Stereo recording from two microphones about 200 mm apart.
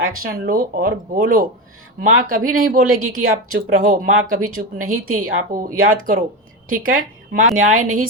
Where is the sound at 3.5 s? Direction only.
45° right (ahead or behind).